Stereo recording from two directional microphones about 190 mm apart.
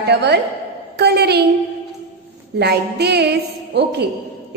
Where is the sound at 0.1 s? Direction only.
60° right (ahead or behind).